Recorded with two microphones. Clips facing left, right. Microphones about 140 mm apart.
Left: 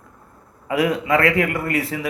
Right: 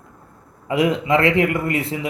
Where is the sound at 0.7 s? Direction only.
25° right (ahead or behind).